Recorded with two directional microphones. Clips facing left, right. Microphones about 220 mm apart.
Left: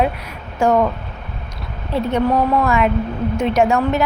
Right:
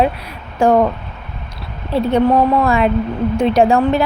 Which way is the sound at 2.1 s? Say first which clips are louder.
Right 4 dB; 35° right (ahead or behind).